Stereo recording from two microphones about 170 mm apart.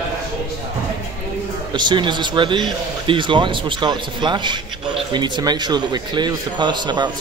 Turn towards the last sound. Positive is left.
turn(degrees=-25)  # may be behind; listen again after turning